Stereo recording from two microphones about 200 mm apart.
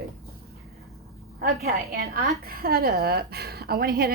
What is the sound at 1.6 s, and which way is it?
A woman's voice, 50° right (ahead or behind).